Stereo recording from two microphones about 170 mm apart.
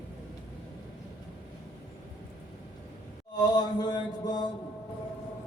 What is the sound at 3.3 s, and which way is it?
Mantra, 25° left (ahead or behind).